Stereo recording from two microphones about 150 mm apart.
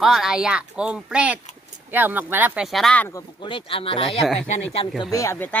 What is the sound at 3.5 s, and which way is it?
Speech, 35° left (ahead or behind).